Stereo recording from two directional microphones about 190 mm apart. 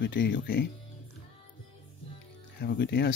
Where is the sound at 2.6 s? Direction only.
60° left (ahead or behind).